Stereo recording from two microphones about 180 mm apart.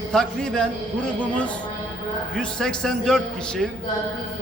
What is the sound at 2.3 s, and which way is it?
A man's voice, 5° left (ahead or behind).